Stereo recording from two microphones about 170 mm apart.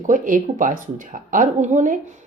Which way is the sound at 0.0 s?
50° right (ahead or behind).